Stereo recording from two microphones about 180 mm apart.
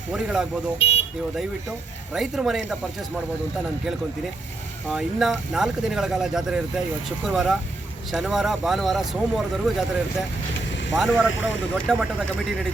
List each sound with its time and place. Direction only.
0.1 s speech: 5° right (ahead or behind)
0.8 s vehicle: 35° left (ahead or behind)
2.1 s speech: centre (ahead or behind)
4.9 s speech: centre (ahead or behind)
10.9 s speech: centre (ahead or behind)